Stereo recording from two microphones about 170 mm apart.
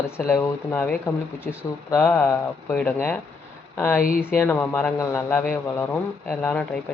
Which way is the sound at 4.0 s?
55° left (ahead or behind).